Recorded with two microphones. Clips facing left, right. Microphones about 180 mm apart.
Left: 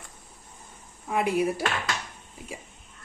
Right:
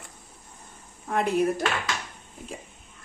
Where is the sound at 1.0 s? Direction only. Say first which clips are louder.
Right 1 dB; 5° left (ahead or behind).